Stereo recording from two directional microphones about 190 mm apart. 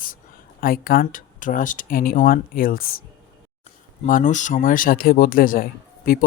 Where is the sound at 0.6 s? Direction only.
50° left (ahead or behind).